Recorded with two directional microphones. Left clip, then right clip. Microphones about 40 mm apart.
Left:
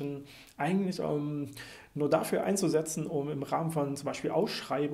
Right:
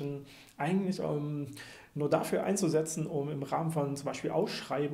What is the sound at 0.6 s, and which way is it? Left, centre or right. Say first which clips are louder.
Speech: left 1 dB; left.